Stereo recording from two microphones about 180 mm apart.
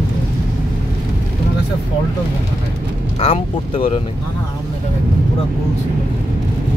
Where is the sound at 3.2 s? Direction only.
30° left (ahead or behind).